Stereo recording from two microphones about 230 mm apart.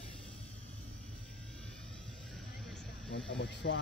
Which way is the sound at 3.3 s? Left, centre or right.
Left.